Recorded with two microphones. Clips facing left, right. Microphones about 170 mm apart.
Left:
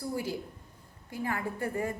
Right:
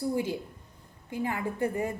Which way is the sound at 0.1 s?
20° right (ahead or behind).